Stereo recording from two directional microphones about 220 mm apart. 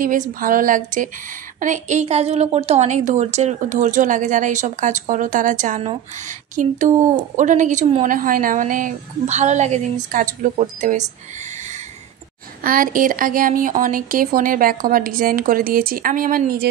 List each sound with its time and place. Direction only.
0.0 s a woman's voice: 35° right (ahead or behind)
12.6 s a woman's voice: 40° right (ahead or behind)